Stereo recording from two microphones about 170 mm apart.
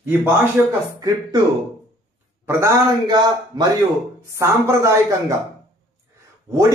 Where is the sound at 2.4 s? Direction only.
15° right (ahead or behind).